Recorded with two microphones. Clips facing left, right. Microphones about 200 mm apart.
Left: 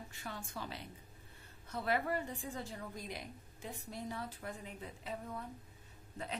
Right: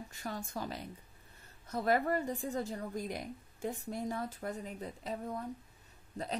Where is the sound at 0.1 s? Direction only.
40° right (ahead or behind).